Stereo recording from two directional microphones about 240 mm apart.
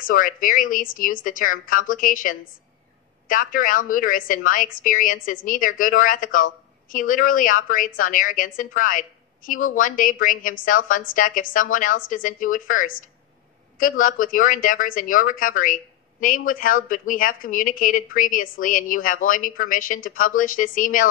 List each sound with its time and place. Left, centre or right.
0.0 s a woman's voice: left